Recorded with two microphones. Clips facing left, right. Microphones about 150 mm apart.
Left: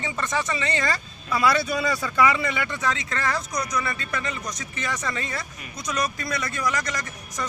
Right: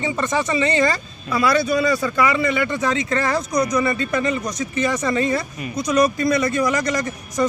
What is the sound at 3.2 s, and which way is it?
Speech, 25° right (ahead or behind).